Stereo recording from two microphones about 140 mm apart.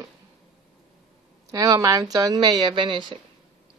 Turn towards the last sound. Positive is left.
turn(degrees=-35)  # may be behind; listen again after turning